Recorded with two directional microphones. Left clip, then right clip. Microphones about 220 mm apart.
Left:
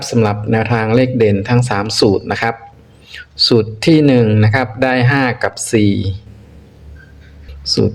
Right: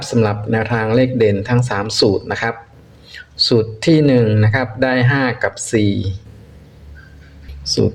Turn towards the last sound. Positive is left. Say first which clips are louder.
# left 2 dB
turn(degrees=5)  # may be behind; listen again after turning